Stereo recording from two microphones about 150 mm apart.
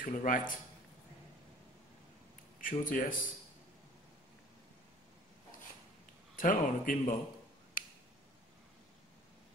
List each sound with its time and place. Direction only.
0.0 s speech: 60° left (ahead or behind)
2.6 s speech: 65° left (ahead or behind)
6.3 s speech: 65° left (ahead or behind)